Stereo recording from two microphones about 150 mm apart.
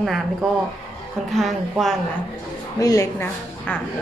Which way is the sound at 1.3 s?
Centre (ahead or behind).